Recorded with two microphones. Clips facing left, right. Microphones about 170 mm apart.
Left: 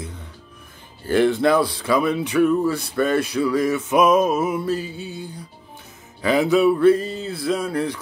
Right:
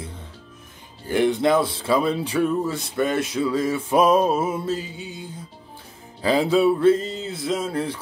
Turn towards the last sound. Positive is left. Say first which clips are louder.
# left 2 dB
turn(degrees=-25)  # may be behind; listen again after turning